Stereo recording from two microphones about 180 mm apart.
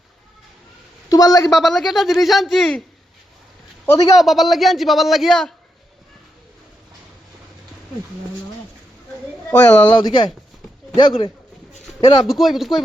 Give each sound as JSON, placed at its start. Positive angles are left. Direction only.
{"t": 1.1, "sound": "a woman's voice", "side_deg": 20}
{"t": 1.5, "sound": "a man's voice", "side_deg": 0}
{"t": 3.8, "sound": "a woman's voice", "side_deg": 20}
{"t": 4.2, "sound": "a man's voice", "side_deg": 0}
{"t": 9.5, "sound": "speech", "side_deg": 10}
{"t": 10.9, "sound": "a woman's voice", "side_deg": 30}
{"t": 12.2, "sound": "a man's voice", "side_deg": 0}